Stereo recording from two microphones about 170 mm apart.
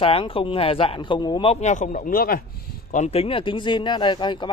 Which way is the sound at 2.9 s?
40° left (ahead or behind).